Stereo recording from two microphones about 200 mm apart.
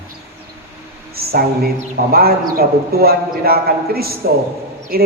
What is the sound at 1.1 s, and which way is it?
A woman's voice, 50° right (ahead or behind).